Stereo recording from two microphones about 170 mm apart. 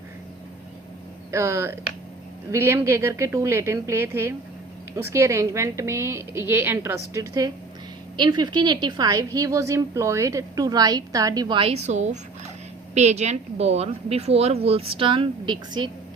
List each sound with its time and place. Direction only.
1.3 s a woman's voice: 15° right (ahead or behind)